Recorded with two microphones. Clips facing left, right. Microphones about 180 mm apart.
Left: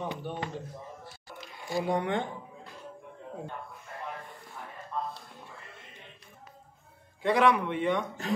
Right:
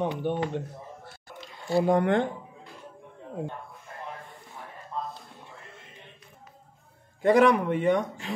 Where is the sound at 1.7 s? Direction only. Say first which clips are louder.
Right 7 dB; 50° right (ahead or behind).